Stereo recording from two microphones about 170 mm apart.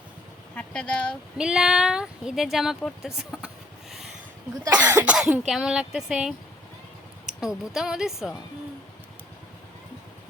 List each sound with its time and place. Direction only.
0.5 s speech: 5° left (ahead or behind)
3.3 s a sound: 5° right (ahead or behind)
4.7 s cough: 10° right (ahead or behind)
5.1 s speech: 5° right (ahead or behind)